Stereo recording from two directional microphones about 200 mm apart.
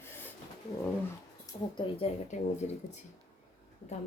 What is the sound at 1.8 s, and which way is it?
Speech, 30° left (ahead or behind).